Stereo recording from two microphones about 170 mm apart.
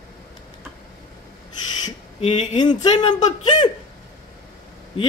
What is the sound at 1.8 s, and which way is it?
Speech, 35° left (ahead or behind).